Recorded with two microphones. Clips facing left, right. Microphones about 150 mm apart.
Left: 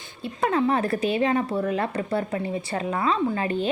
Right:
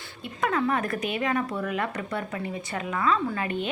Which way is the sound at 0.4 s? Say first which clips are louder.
Left 3 dB; 30° left (ahead or behind).